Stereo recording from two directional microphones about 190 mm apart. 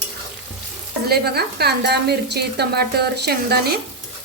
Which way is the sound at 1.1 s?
55° right (ahead or behind).